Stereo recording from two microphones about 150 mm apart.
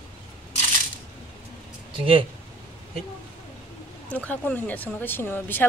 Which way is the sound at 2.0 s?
35° right (ahead or behind).